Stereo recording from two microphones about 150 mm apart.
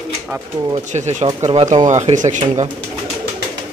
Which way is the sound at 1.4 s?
30° right (ahead or behind).